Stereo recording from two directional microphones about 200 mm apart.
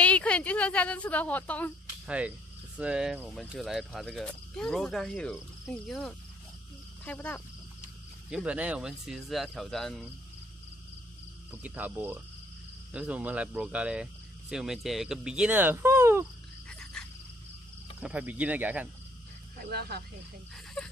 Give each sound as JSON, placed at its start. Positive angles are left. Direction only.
{"t": 0.0, "sound": "a woman's voice", "side_deg": 5}
{"t": 2.0, "sound": "speech", "side_deg": -5}
{"t": 8.3, "sound": "speech", "side_deg": -5}
{"t": 11.5, "sound": "speech", "side_deg": -10}
{"t": 18.0, "sound": "speech", "side_deg": -5}
{"t": 19.6, "sound": "speech", "side_deg": -50}
{"t": 20.8, "sound": "a sound", "side_deg": 5}